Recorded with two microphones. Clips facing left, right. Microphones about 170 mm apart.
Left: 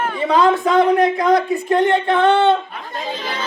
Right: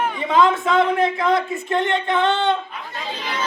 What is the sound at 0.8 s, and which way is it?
Speech, 25° right (ahead or behind).